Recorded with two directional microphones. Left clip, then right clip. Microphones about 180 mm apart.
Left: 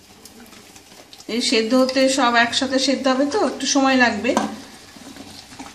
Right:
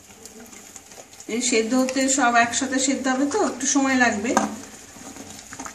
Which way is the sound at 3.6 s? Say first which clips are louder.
Left 5 dB; 20° left (ahead or behind).